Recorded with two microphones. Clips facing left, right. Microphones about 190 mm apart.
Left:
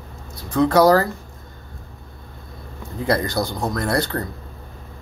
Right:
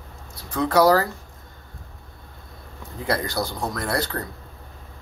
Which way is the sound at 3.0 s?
5° right (ahead or behind).